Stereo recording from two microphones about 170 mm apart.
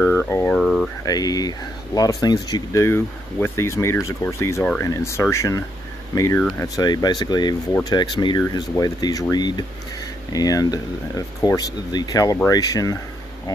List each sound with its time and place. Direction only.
0.3 s speech: 15° left (ahead or behind)
0.6 s a sound: centre (ahead or behind)
1.0 s speech: 20° left (ahead or behind)
2.5 s speech: 15° left (ahead or behind)